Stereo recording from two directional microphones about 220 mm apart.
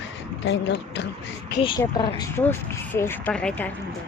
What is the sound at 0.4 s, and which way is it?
Speech, 55° left (ahead or behind).